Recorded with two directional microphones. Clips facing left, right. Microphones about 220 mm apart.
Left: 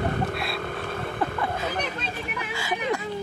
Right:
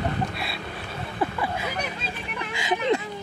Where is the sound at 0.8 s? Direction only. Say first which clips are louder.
Left 4 dB; 55° left (ahead or behind).